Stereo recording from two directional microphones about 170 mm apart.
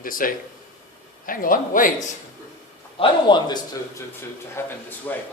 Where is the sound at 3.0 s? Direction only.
25° left (ahead or behind).